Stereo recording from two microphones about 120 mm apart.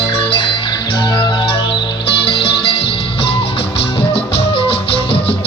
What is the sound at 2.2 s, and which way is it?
Music, 45° left (ahead or behind).